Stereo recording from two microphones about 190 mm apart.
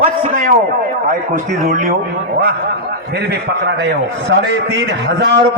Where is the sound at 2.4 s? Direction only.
60° right (ahead or behind).